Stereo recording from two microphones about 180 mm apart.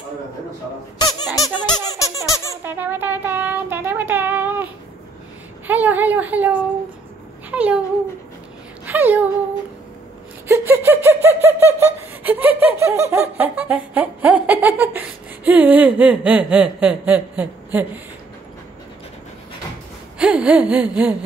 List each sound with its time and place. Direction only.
0.9 s speech: 20° left (ahead or behind)
2.0 s squeak: 20° left (ahead or behind)
2.6 s child singing: 10° right (ahead or behind)
5.7 s laughter: 10° right (ahead or behind)
7.5 s speech: 5° right (ahead or behind)
8.8 s speech: 10° right (ahead or behind)
10.5 s a sound: 15° right (ahead or behind)
11.2 s laughter: 15° right (ahead or behind)
20.2 s gasp: 5° right (ahead or behind)